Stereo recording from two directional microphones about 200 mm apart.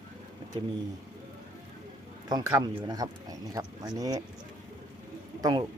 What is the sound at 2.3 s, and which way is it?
Speech, 20° right (ahead or behind).